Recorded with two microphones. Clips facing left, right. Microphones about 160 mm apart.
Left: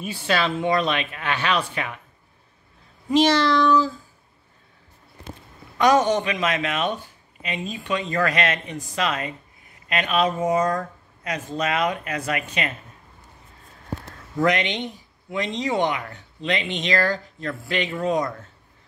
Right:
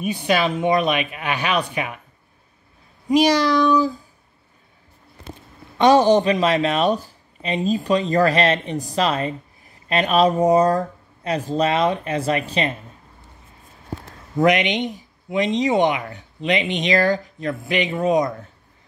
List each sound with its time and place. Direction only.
0.0 s speech: 15° right (ahead or behind)
3.1 s speech: 10° right (ahead or behind)
5.8 s speech: 30° right (ahead or behind)
14.4 s speech: 15° right (ahead or behind)